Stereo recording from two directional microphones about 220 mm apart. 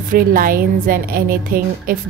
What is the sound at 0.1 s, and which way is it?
A woman's voice, 40° right (ahead or behind).